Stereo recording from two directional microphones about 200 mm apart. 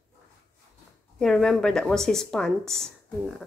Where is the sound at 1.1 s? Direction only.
5° left (ahead or behind).